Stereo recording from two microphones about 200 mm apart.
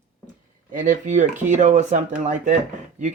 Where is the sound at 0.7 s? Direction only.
40° right (ahead or behind).